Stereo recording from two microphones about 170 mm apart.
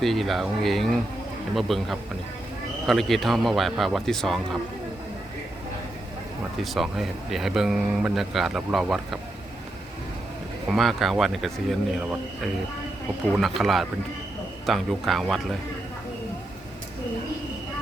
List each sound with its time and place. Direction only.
0.0 s speech: centre (ahead or behind)
6.6 s speech: centre (ahead or behind)
10.7 s speech: centre (ahead or behind)
13.3 s speech: centre (ahead or behind)